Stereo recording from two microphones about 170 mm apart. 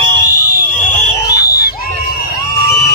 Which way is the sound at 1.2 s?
20° left (ahead or behind).